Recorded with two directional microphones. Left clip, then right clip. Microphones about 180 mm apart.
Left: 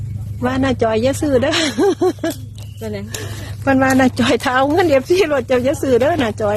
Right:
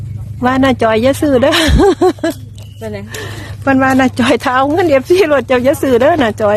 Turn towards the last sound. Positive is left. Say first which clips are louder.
# right 6 dB
turn(degrees=-25)  # may be behind; listen again after turning